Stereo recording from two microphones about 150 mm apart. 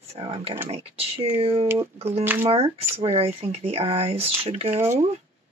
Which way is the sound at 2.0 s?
40° right (ahead or behind).